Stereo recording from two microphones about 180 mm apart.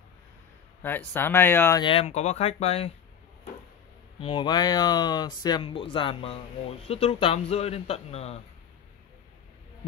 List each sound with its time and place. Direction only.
0.8 s speech: 10° left (ahead or behind)
1.8 s speech: 30° left (ahead or behind)
4.2 s speech: 25° left (ahead or behind)